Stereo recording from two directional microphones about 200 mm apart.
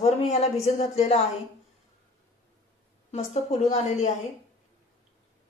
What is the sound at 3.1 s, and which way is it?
A woman's voice, 30° left (ahead or behind).